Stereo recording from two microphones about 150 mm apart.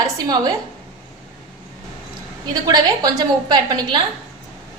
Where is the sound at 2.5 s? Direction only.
25° right (ahead or behind).